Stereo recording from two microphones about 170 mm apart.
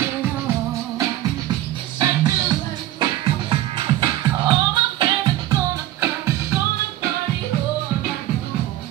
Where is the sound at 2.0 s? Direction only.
25° right (ahead or behind).